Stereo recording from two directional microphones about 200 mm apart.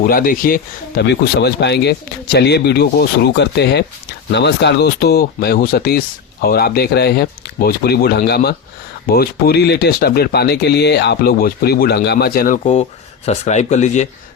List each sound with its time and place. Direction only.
0.0 s speech: 45° left (ahead or behind)